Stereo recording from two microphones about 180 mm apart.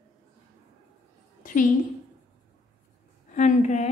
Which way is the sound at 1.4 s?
45° left (ahead or behind).